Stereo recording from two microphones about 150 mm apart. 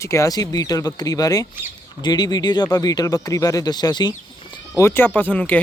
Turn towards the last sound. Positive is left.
turn(degrees=10)  # may be behind; listen again after turning